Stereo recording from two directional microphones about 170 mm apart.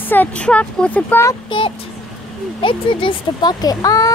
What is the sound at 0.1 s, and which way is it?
Speech, 10° left (ahead or behind).